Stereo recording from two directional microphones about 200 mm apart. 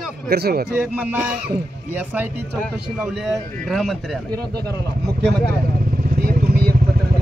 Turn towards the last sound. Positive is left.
turn(degrees=-50)  # may be behind; listen again after turning